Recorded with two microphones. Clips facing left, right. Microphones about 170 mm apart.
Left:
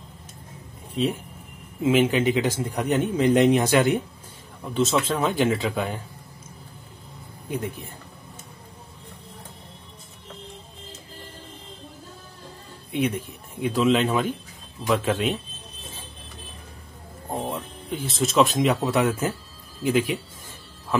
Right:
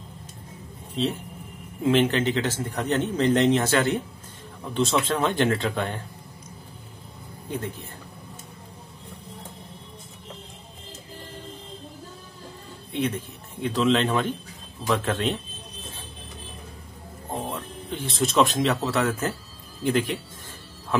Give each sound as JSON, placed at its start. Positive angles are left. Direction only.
{"t": 1.8, "sound": "speech", "side_deg": 5}
{"t": 4.7, "sound": "speech", "side_deg": 0}
{"t": 12.9, "sound": "speech", "side_deg": 10}
{"t": 17.3, "sound": "speech", "side_deg": 10}